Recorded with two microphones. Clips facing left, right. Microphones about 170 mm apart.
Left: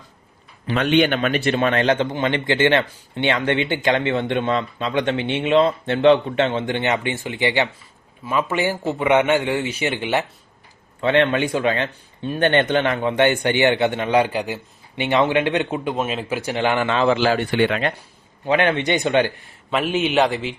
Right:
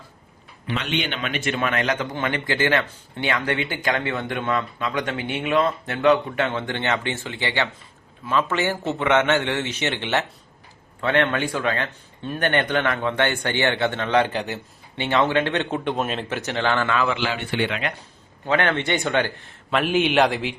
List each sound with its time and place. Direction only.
0.8 s speech: 50° left (ahead or behind)
1.5 s speech: 30° left (ahead or behind); by 16.9 s 15° left (ahead or behind)
16.9 s speech: 30° left (ahead or behind)
18.4 s speech: 15° left (ahead or behind)
19.7 s a man's voice: centre (ahead or behind)